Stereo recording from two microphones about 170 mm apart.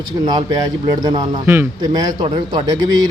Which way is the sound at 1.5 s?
20° right (ahead or behind).